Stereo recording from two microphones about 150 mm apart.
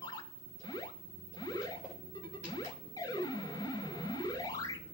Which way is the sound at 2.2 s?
25° left (ahead or behind).